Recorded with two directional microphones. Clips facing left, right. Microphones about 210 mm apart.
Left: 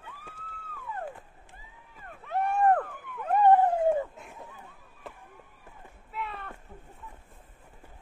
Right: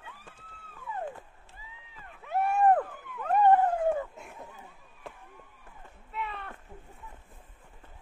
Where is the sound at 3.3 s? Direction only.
10° left (ahead or behind).